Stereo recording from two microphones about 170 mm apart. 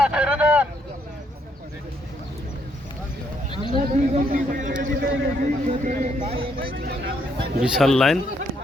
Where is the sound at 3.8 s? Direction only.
55° right (ahead or behind).